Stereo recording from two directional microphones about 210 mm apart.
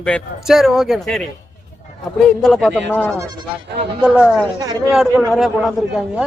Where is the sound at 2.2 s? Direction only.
Centre (ahead or behind).